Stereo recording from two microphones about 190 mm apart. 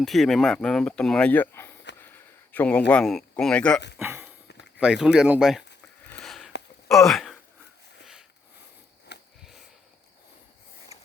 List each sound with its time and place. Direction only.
0.0 s speech: centre (ahead or behind)
2.0 s a sound: 10° left (ahead or behind)
2.9 s speech: centre (ahead or behind)
3.9 s a sound: 10° right (ahead or behind)
4.8 s speech: 5° right (ahead or behind)
6.1 s sniff: 5° left (ahead or behind)
6.9 s speech: centre (ahead or behind)
9.4 s sniff: centre (ahead or behind)
10.9 s a sound: 35° left (ahead or behind)